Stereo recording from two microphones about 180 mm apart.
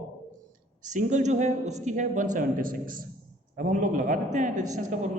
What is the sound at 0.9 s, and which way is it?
A man's voice, 45° right (ahead or behind).